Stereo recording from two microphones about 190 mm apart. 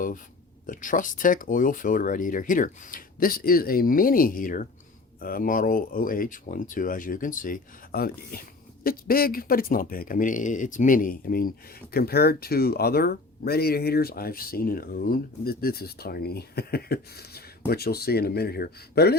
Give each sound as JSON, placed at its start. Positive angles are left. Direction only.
{"t": 0.7, "sound": "speech", "side_deg": 45}